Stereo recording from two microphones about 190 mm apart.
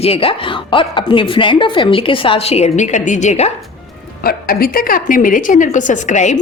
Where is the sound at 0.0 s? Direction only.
30° left (ahead or behind).